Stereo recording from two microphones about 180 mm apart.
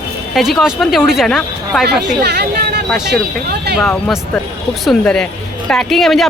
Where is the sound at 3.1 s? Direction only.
65° right (ahead or behind).